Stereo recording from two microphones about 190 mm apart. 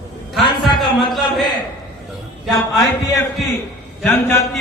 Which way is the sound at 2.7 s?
Centre (ahead or behind).